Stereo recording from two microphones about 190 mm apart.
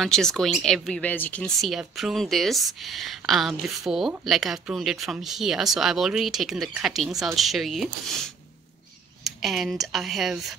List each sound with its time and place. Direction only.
0.0 s speech: 5° left (ahead or behind)
9.2 s speech: centre (ahead or behind)